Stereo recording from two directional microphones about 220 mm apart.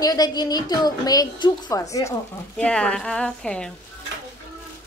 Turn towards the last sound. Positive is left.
turn(degrees=5)  # may be behind; listen again after turning